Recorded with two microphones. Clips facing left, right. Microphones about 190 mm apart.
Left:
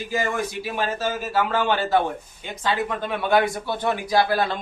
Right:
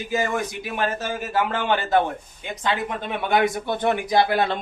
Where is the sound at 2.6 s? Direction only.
20° right (ahead or behind).